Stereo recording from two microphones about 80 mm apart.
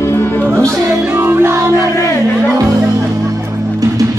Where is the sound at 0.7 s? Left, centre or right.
Right.